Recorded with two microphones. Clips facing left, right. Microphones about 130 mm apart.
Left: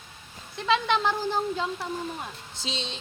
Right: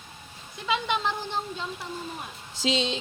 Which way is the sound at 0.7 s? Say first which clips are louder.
Left 3 dB; 15° right (ahead or behind).